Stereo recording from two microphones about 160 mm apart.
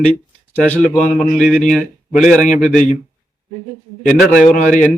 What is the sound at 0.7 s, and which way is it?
Speech, 5° left (ahead or behind).